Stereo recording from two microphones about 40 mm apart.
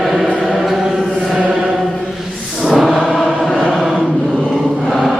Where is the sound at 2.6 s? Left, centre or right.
Centre.